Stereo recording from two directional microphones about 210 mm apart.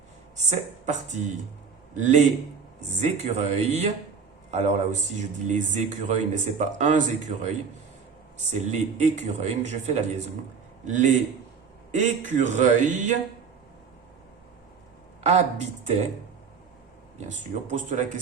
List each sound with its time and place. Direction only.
0.5 s a man's voice: 35° right (ahead or behind)
8.5 s speech: 35° right (ahead or behind)
15.2 s speech: 30° right (ahead or behind)
17.7 s speech: 35° right (ahead or behind)